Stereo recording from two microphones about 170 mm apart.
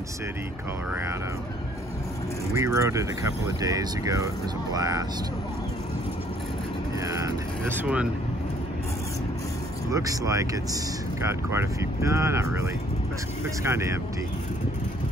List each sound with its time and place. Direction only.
2.5 s speech: 15° right (ahead or behind)
7.1 s vehicle: 20° right (ahead or behind)
9.8 s speech: 20° right (ahead or behind)
13.7 s speech: 15° right (ahead or behind)